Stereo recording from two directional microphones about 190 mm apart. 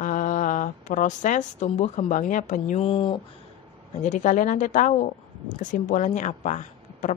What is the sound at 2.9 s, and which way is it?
Speech, 25° left (ahead or behind).